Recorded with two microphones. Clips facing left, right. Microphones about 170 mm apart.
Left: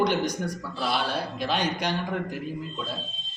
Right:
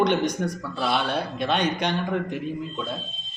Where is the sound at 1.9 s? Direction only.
5° left (ahead or behind).